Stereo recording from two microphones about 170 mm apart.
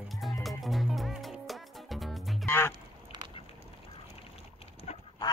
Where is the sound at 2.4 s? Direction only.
15° left (ahead or behind).